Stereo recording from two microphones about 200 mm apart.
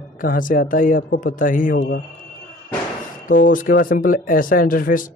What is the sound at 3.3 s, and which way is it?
Speech, 40° left (ahead or behind).